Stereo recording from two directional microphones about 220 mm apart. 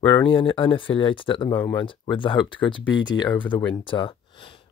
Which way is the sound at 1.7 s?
20° left (ahead or behind).